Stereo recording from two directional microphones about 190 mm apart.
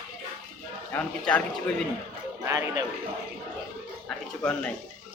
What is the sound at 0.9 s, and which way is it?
Speech, 5° left (ahead or behind).